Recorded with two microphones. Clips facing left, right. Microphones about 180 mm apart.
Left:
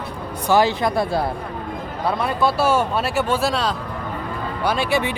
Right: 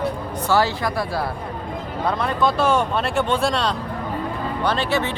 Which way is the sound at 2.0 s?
10° left (ahead or behind).